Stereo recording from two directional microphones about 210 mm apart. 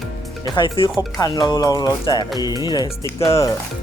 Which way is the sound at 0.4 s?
20° left (ahead or behind).